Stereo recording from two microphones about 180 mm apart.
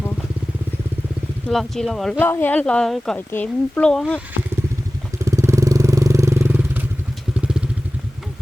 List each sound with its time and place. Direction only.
1.5 s speech: centre (ahead or behind)
5.2 s vehicle: 15° right (ahead or behind)